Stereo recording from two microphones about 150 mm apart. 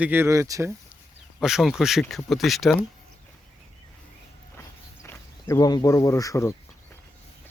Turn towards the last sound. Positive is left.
turn(degrees=20)  # may be behind; listen again after turning